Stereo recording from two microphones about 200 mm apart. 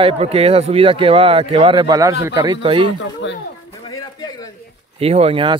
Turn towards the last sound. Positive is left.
turn(degrees=-25)  # may be behind; listen again after turning